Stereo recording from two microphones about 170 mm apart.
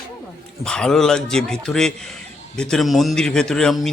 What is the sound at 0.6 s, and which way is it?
Speech, 5° left (ahead or behind).